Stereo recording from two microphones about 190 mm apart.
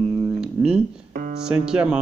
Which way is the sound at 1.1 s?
55° right (ahead or behind).